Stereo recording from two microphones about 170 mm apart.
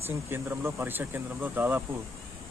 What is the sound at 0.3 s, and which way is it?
Speech, 15° right (ahead or behind).